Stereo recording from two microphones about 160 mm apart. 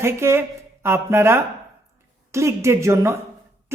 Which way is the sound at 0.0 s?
15° right (ahead or behind).